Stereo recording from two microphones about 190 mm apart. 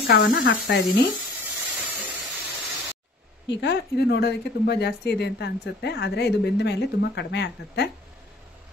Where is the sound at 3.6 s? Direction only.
60° left (ahead or behind).